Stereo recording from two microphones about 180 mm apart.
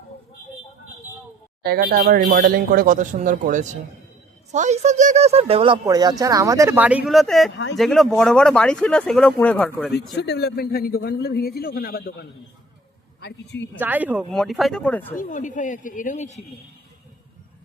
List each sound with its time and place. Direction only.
1.6 s speech: 55° right (ahead or behind); by 9.9 s 5° left (ahead or behind)
10.2 s a man's voice: 65° left (ahead or behind)
13.7 s speech: 10° right (ahead or behind); by 15.0 s 5° left (ahead or behind)
15.1 s speech: 45° left (ahead or behind)